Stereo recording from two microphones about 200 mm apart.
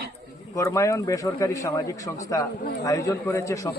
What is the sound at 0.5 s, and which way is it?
A man's voice, 15° left (ahead or behind).